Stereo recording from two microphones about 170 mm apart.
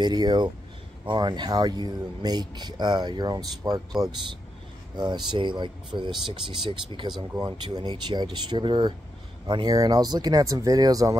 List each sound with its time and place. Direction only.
0.0 s speech: 25° right (ahead or behind)
7.2 s speech: 25° right (ahead or behind)